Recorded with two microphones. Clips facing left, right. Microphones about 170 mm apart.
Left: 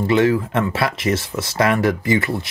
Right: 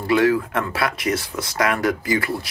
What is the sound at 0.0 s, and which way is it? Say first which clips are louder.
Speech: left 1 dB; 25° left (ahead or behind).